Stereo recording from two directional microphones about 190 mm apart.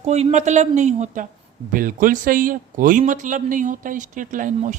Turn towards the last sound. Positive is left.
turn(degrees=-40)  # may be behind; listen again after turning